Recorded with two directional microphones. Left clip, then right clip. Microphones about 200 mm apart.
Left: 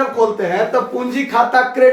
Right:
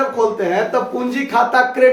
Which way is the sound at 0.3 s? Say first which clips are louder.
Left 1 dB; 15° right (ahead or behind).